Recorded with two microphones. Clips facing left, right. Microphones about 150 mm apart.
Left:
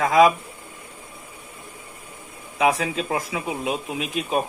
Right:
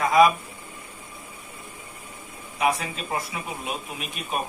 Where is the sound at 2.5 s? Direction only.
90° left.